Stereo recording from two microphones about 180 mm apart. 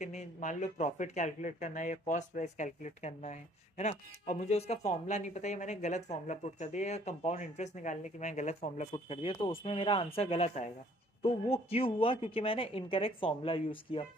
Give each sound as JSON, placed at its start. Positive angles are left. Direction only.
{"t": 0.0, "sound": "speech", "side_deg": 40}